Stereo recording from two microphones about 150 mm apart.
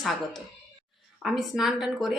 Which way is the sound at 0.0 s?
Centre (ahead or behind).